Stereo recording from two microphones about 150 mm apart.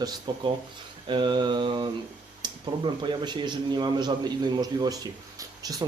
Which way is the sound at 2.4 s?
30° right (ahead or behind).